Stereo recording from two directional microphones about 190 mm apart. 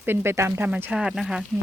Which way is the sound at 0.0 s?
10° right (ahead or behind).